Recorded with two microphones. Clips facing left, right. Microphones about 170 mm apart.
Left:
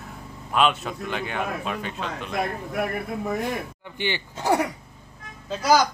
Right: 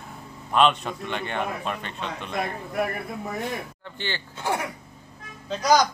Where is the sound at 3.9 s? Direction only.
15° left (ahead or behind).